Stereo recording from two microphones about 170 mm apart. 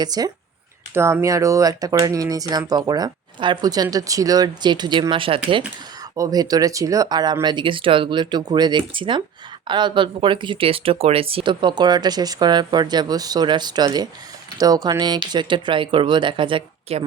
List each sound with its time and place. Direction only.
0.0 s speech: 25° right (ahead or behind)